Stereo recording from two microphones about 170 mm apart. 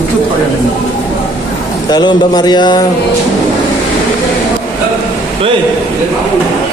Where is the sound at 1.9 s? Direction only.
25° left (ahead or behind).